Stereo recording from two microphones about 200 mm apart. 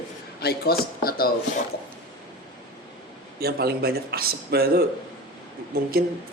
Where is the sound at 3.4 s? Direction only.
50° right (ahead or behind).